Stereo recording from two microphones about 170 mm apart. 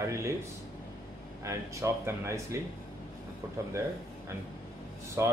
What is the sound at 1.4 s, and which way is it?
A man's voice, 20° right (ahead or behind).